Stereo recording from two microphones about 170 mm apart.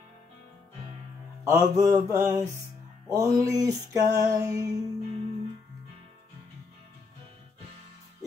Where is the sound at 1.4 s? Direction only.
15° right (ahead or behind).